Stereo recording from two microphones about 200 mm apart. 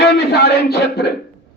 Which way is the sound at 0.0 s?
55° left (ahead or behind).